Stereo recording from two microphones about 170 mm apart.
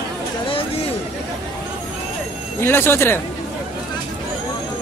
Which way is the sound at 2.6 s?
15° left (ahead or behind).